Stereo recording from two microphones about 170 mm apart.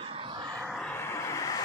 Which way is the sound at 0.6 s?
5° left (ahead or behind).